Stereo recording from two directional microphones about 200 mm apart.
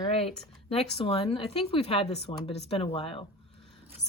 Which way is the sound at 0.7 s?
30° left (ahead or behind).